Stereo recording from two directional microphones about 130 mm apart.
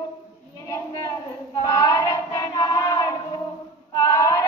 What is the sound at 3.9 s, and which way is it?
Female singing, 25° left (ahead or behind).